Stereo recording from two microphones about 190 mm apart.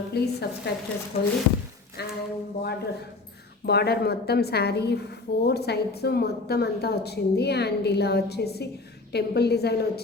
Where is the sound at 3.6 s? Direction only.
60° left (ahead or behind).